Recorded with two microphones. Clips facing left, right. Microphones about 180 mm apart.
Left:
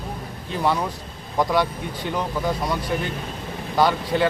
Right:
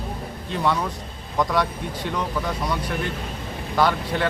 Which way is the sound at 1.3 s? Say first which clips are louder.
Left 1 dB; centre (ahead or behind).